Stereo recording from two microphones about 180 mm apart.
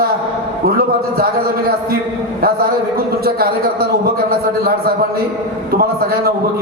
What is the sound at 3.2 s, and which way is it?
A man's voice, 55° right (ahead or behind).